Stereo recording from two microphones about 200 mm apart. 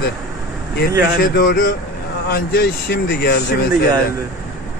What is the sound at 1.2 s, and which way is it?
Speech, 45° left (ahead or behind).